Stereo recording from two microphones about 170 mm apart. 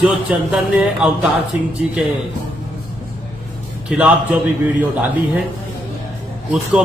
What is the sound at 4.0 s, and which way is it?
A man's voice, 10° right (ahead or behind).